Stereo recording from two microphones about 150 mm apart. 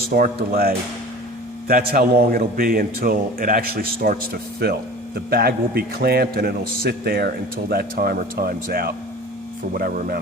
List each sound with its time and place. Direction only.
0.1 s a man's voice: 90° right
1.6 s a man's voice: 80° right
9.7 s a man's voice: 75° right (ahead or behind)